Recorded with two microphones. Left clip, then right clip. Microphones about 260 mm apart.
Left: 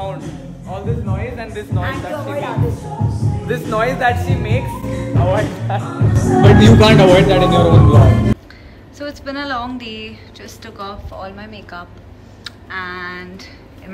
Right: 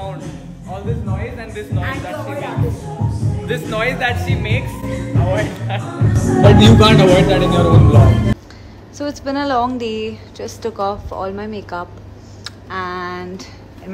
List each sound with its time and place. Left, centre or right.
0.0 s speech: centre
8.9 s a woman's voice: centre
12.4 s speech: centre